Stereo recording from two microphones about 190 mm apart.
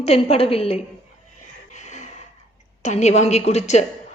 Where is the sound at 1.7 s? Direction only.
40° left (ahead or behind).